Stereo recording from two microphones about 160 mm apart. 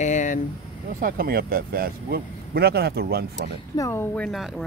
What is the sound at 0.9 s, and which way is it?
Speech, 65° right (ahead or behind).